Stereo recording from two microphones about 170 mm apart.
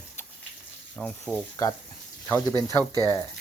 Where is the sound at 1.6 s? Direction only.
20° left (ahead or behind).